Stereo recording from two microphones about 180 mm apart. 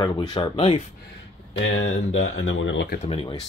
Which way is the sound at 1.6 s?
90° left.